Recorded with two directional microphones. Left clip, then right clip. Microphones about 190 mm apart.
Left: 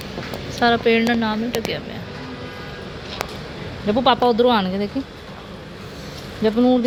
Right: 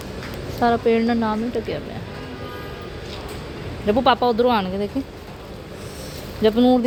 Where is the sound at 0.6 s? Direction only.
15° right (ahead or behind).